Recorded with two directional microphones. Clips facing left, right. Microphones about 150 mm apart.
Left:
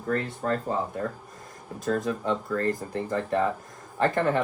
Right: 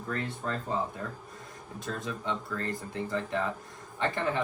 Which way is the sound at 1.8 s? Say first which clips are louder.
Left 9 dB; 45° left (ahead or behind).